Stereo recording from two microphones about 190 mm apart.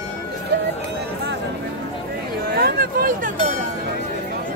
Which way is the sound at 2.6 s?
55° right (ahead or behind).